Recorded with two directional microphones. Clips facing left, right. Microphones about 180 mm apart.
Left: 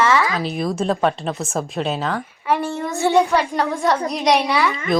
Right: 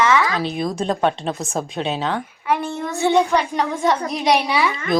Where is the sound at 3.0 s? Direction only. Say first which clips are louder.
Even; 15° right (ahead or behind).